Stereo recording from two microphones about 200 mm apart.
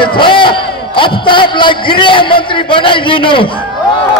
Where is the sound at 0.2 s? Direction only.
25° left (ahead or behind).